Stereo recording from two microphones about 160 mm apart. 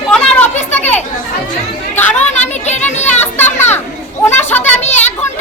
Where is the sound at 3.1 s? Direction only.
15° left (ahead or behind).